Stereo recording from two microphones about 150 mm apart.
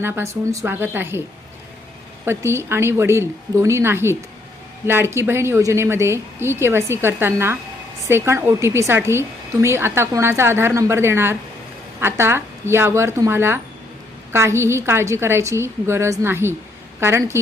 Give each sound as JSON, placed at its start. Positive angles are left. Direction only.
{"t": 0.0, "sound": "a woman's voice", "side_deg": -15}
{"t": 2.2, "sound": "a woman's voice", "side_deg": -15}